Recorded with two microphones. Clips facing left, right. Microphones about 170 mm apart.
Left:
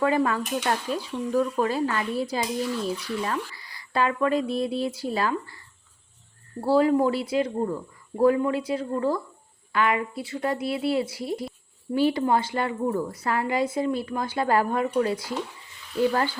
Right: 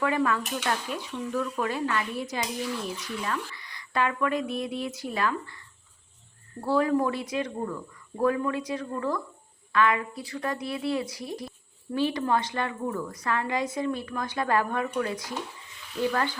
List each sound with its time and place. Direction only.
0.0 s a woman's voice: 30° left (ahead or behind)